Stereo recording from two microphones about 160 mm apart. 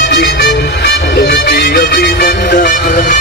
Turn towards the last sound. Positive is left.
turn(degrees=60)  # may be behind; listen again after turning